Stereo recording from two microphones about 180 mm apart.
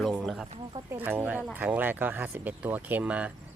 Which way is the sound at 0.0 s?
Centre (ahead or behind).